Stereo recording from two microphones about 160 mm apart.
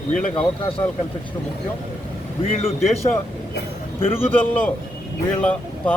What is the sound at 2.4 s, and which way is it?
Speech, 40° left (ahead or behind).